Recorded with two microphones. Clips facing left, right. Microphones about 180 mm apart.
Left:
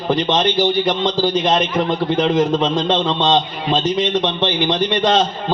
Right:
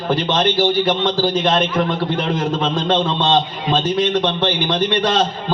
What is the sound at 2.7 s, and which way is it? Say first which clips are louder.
A man's voice: even; 20° left (ahead or behind).